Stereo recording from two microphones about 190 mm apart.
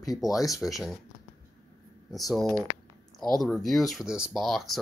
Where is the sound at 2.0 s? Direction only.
Centre (ahead or behind).